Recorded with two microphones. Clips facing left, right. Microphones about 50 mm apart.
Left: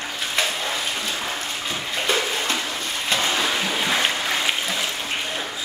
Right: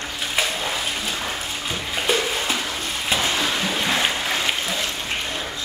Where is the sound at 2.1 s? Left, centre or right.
Centre.